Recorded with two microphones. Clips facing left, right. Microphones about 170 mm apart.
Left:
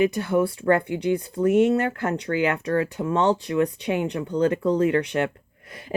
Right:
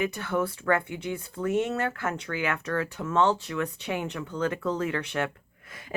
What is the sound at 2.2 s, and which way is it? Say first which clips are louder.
Speech: left 7 dB; 15° left (ahead or behind).